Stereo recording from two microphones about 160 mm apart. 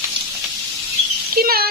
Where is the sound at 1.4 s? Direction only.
70° right (ahead or behind).